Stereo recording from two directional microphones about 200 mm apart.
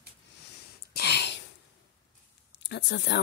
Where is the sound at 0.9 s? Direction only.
55° left (ahead or behind).